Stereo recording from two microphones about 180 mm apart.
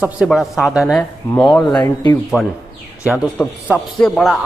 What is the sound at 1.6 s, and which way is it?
Speech, 25° left (ahead or behind).